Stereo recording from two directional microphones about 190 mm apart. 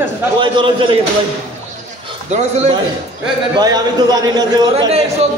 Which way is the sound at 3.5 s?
20° right (ahead or behind).